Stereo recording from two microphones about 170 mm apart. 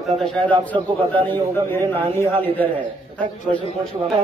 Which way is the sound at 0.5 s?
30° right (ahead or behind).